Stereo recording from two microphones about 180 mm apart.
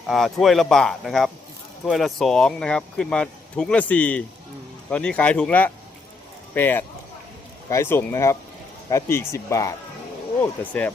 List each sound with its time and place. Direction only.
0.1 s speech: centre (ahead or behind)